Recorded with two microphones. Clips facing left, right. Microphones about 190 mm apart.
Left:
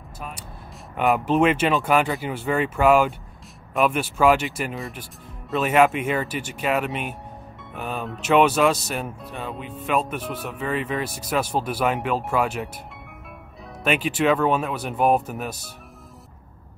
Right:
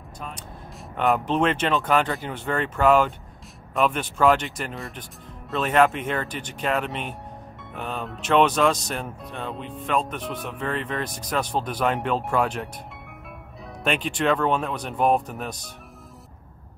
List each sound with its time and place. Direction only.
0.2 s vehicle: 10° left (ahead or behind)
0.9 s speech: 5° left (ahead or behind)
13.8 s speech: 5° left (ahead or behind)